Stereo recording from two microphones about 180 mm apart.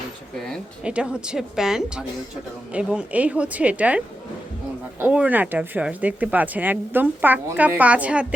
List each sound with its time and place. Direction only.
0.4 s a woman's voice: centre (ahead or behind)